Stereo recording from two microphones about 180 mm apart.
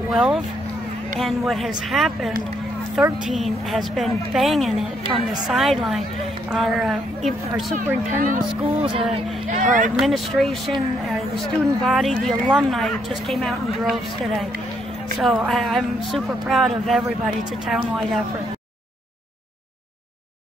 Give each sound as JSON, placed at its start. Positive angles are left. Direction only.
{"t": 0.1, "sound": "speech", "side_deg": 0}
{"t": 5.0, "sound": "a woman's voice", "side_deg": -30}
{"t": 5.5, "sound": "speech", "side_deg": 0}
{"t": 7.7, "sound": "speech", "side_deg": -45}
{"t": 8.6, "sound": "a woman's voice", "side_deg": -25}
{"t": 9.1, "sound": "speech", "side_deg": -45}
{"t": 9.9, "sound": "speech", "side_deg": 0}